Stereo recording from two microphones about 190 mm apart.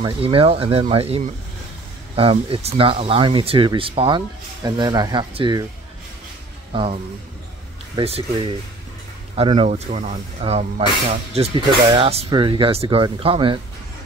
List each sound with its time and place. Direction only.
0.0 s speech: 30° right (ahead or behind)
6.7 s speech: 30° right (ahead or behind)
9.3 s speech: 30° right (ahead or behind)